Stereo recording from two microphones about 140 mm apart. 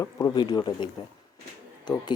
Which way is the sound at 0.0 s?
20° left (ahead or behind).